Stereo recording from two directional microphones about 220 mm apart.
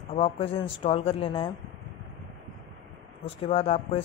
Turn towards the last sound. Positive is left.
turn(degrees=25)  # may be behind; listen again after turning